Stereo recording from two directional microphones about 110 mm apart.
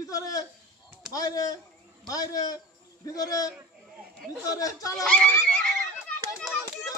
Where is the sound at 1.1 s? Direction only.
35° left (ahead or behind).